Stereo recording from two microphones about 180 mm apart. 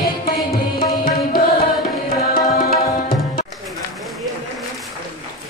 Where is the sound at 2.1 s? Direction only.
55° left (ahead or behind).